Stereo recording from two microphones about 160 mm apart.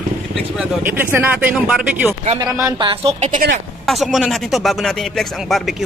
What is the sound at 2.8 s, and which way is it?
Speech, 35° right (ahead or behind).